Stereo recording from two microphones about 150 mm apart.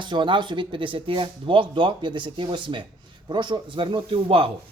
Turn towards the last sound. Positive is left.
turn(degrees=-40)  # may be behind; listen again after turning